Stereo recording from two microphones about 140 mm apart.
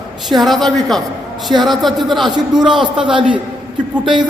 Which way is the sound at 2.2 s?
30° right (ahead or behind).